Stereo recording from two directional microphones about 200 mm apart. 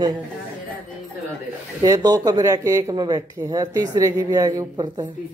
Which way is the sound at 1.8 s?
15° right (ahead or behind).